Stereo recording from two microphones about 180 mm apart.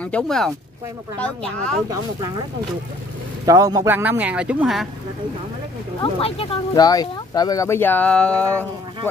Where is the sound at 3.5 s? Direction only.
20° right (ahead or behind); by 4.9 s 5° right (ahead or behind).